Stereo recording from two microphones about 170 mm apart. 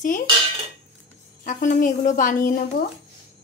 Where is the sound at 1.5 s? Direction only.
50° left (ahead or behind).